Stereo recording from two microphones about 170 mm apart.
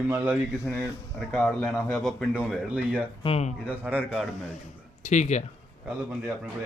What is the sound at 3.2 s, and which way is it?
Speech, 35° left (ahead or behind).